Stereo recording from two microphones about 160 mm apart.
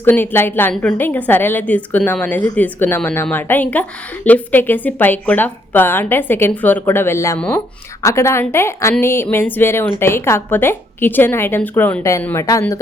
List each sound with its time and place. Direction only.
0.0 s a woman's voice: 15° left (ahead or behind)
8.0 s a woman's voice: 15° left (ahead or behind)